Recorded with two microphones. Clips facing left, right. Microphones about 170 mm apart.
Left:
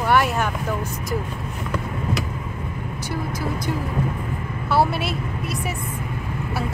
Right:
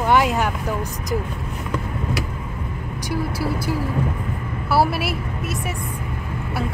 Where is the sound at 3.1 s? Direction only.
5° right (ahead or behind).